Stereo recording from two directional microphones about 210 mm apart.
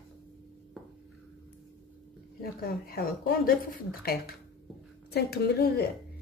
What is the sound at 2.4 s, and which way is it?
Speech, 45° left (ahead or behind).